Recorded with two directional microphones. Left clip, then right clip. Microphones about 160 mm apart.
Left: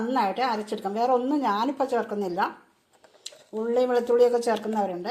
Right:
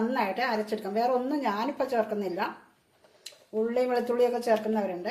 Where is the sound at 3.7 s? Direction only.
35° left (ahead or behind).